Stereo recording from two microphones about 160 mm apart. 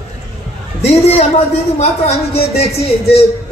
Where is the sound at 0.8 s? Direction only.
40° left (ahead or behind).